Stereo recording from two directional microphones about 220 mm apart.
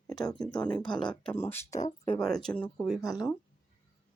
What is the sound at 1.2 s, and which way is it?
A woman's voice, 10° left (ahead or behind).